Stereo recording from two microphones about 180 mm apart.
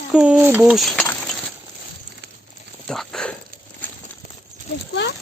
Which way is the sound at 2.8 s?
5° left (ahead or behind).